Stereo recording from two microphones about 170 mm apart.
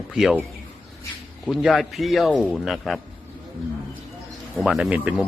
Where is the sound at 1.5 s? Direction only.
Centre (ahead or behind).